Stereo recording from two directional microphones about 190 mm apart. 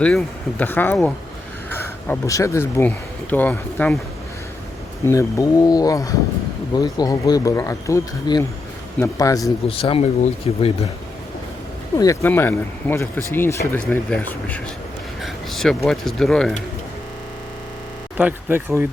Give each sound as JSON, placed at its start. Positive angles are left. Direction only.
{"t": 0.0, "sound": "speech", "side_deg": 5}
{"t": 5.0, "sound": "speech", "side_deg": 15}
{"t": 9.6, "sound": "speech", "side_deg": 30}
{"t": 11.9, "sound": "speech", "side_deg": 15}
{"t": 18.2, "sound": "speech", "side_deg": -10}